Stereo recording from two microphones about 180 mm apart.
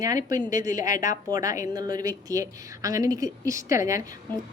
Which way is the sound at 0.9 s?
45° left (ahead or behind).